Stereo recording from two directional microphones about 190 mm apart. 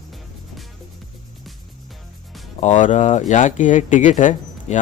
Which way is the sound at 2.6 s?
40° left (ahead or behind).